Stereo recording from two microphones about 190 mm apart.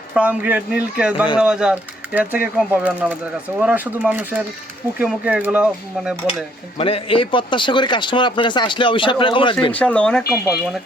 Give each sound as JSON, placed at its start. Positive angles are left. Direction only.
{"t": 0.1, "sound": "speech", "side_deg": -10}
{"t": 6.7, "sound": "speech", "side_deg": 30}
{"t": 9.7, "sound": "speech", "side_deg": 5}